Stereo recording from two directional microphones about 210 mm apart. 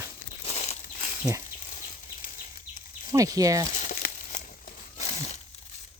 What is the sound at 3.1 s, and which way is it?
Speech, 15° right (ahead or behind).